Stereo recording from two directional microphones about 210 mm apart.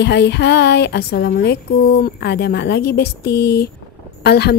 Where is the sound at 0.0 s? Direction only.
55° left (ahead or behind).